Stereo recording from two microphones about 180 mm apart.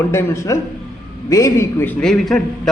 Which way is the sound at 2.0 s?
Centre (ahead or behind).